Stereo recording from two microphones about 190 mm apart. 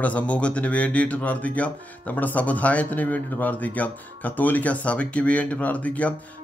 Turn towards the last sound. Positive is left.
turn(degrees=5)  # may be behind; listen again after turning